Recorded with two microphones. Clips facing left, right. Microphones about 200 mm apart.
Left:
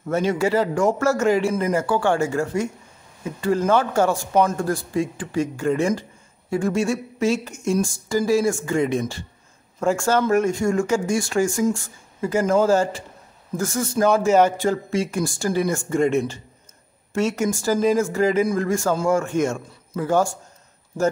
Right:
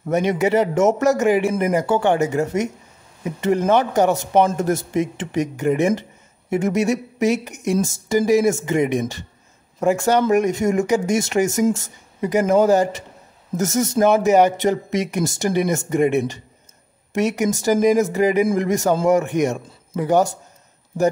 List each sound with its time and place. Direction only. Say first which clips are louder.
0.1 s speech: right 2 dB; 20° right (ahead or behind)